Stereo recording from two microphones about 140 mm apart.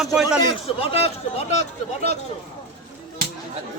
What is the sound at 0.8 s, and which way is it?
Speech, 45° left (ahead or behind).